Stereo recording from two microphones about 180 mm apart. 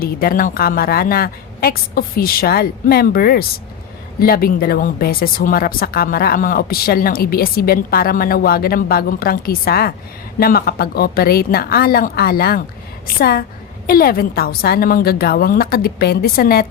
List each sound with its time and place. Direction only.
0.0 s speech: 55° left (ahead or behind)